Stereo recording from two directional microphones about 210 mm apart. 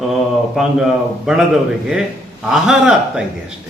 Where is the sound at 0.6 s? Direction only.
Centre (ahead or behind).